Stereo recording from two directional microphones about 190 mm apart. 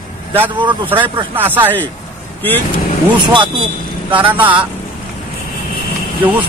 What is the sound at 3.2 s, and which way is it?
Speech, 25° right (ahead or behind).